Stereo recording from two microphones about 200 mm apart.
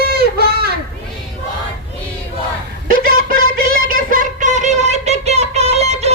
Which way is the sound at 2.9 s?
45° right (ahead or behind).